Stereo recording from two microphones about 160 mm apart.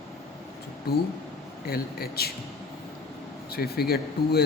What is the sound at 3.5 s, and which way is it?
Speech, 75° left (ahead or behind).